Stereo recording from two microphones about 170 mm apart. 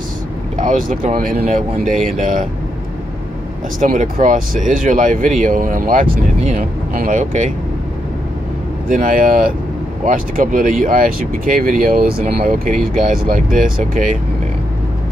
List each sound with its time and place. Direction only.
1.0 s speech: 55° right (ahead or behind)
3.8 s speech: 50° right (ahead or behind)
8.8 s speech: 50° right (ahead or behind)